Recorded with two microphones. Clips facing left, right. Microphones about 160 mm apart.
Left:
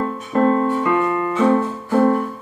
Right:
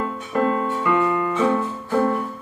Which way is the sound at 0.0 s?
35° left (ahead or behind).